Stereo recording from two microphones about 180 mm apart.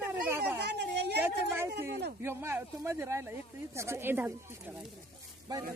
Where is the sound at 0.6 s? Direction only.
65° right (ahead or behind).